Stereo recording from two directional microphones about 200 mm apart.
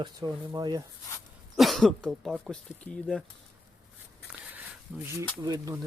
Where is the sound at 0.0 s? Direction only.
20° right (ahead or behind).